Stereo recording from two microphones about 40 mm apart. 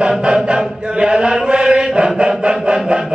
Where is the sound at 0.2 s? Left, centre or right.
Right.